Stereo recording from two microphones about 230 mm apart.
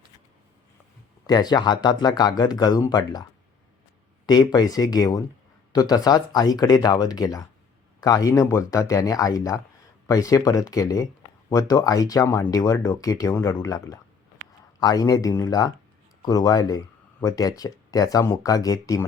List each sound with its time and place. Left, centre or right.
1.3 s speech: centre
4.5 s speech: centre